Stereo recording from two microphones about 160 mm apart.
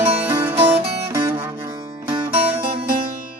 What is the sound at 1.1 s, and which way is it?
Music, 15° right (ahead or behind).